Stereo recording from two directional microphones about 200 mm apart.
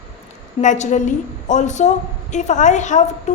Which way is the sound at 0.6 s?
40° left (ahead or behind).